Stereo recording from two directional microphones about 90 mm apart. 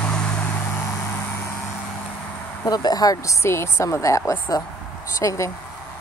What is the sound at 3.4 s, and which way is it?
A woman's voice, 30° left (ahead or behind).